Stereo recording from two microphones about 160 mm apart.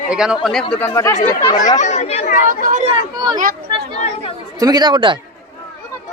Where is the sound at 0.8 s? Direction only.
20° left (ahead or behind).